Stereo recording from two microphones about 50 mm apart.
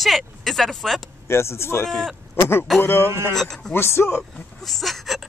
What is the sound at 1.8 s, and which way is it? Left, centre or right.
Speech, centre.